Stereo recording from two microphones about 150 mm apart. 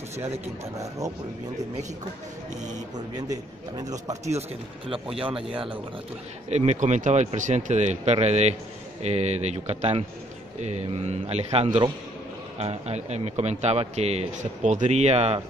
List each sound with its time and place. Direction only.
0.7 s a man's voice: 25° right (ahead or behind)
3.2 s a man's voice: 25° right (ahead or behind)
4.3 s speech: 40° right (ahead or behind)
6.5 s speech: 50° right (ahead or behind)